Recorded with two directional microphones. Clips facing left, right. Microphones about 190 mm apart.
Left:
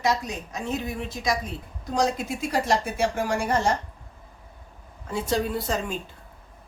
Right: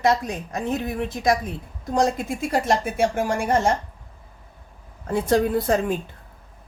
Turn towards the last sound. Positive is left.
turn(degrees=-55)  # may be behind; listen again after turning